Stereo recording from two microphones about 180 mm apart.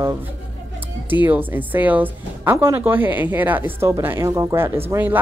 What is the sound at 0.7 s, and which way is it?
Speech, 10° right (ahead or behind).